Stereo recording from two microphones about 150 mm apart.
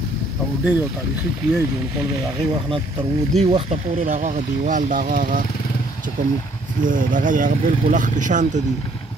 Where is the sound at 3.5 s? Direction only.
55° right (ahead or behind).